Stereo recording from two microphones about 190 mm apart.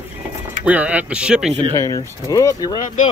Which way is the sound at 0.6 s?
5° right (ahead or behind).